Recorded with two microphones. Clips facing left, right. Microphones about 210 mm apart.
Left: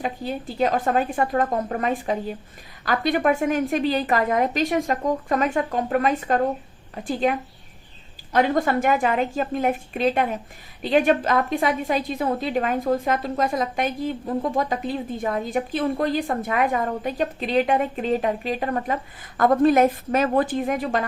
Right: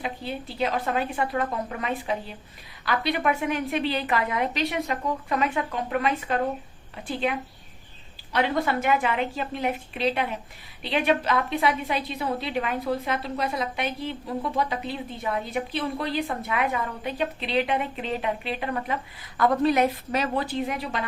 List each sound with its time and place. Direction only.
0.0 s a woman's voice: 45° left (ahead or behind)